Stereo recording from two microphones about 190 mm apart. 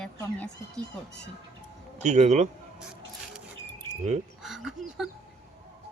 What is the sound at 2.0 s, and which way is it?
Speech, 35° right (ahead or behind).